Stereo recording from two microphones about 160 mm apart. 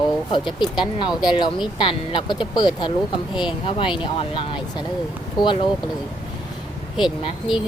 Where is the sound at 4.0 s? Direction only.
30° left (ahead or behind).